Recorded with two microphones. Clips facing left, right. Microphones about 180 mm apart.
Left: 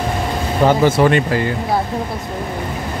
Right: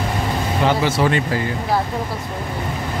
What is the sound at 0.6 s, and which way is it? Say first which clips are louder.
Speech: left 6 dB; 55° left (ahead or behind).